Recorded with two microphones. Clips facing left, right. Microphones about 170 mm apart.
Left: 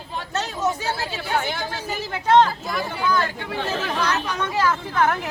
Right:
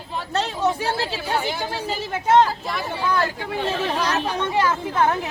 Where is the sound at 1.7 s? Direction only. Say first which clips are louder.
Right 2 dB; 30° right (ahead or behind).